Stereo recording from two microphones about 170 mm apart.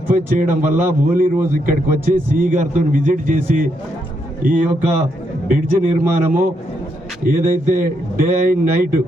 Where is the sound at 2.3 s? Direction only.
55° right (ahead or behind).